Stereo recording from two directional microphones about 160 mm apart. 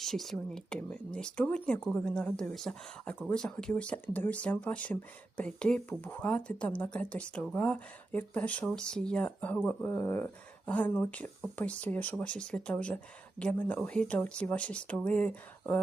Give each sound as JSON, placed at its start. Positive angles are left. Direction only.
{"t": 0.0, "sound": "speech", "side_deg": 0}